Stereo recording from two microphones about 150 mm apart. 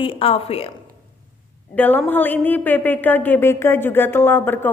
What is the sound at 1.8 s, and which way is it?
A woman's voice, 10° left (ahead or behind).